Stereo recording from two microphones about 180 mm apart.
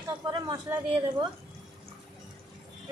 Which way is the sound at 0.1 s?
25° right (ahead or behind).